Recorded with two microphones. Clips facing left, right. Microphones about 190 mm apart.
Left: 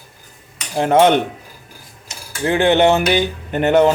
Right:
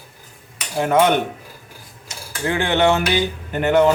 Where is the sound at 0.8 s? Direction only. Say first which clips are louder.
Left 3 dB; 25° left (ahead or behind).